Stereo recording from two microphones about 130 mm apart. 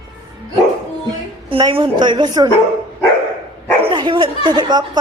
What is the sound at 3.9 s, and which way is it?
Speech, 40° right (ahead or behind).